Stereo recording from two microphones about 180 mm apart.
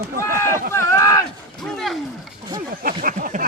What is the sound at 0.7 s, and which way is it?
Speech, 15° left (ahead or behind).